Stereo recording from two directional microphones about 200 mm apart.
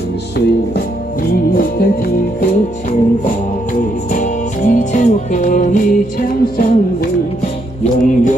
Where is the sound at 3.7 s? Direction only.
40° left (ahead or behind).